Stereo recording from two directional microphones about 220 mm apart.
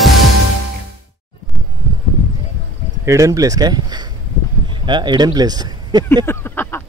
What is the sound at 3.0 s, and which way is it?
Speech, 15° right (ahead or behind).